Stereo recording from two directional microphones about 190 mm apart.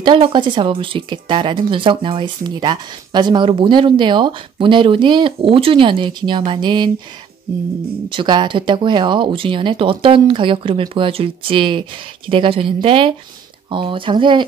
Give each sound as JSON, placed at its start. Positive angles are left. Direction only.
{"t": 0.0, "sound": "speech", "side_deg": -25}
{"t": 8.1, "sound": "speech", "side_deg": -25}